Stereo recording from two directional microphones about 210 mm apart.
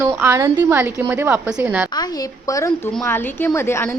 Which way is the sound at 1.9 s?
20° left (ahead or behind).